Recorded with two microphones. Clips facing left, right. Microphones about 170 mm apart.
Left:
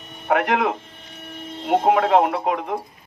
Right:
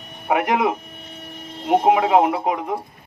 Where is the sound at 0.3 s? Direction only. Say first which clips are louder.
Right 1 dB; 15° right (ahead or behind).